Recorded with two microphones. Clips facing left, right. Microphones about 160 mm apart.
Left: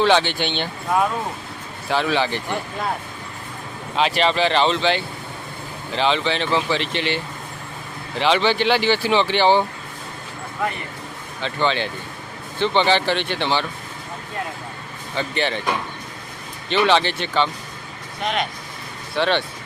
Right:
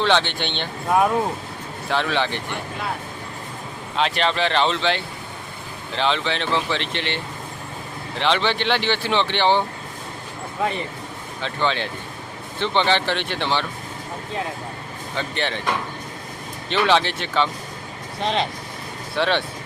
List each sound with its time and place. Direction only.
0.0 s speech: 5° left (ahead or behind)
1.9 s speech: 5° left (ahead or behind)
3.9 s speech: 5° left (ahead or behind)
8.2 s speech: 5° left (ahead or behind)
11.3 s speech: centre (ahead or behind)
15.1 s speech: centre (ahead or behind)
18.2 s speech: 30° right (ahead or behind)
19.1 s speech: centre (ahead or behind)